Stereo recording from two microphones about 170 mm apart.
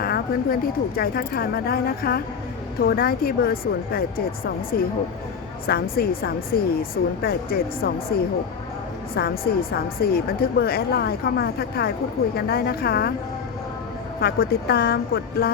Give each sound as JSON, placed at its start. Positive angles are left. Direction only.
{"t": 0.0, "sound": "speech", "side_deg": 60}
{"t": 14.2, "sound": "speech", "side_deg": 65}